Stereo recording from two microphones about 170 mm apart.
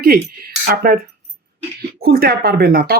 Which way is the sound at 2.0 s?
60° right (ahead or behind).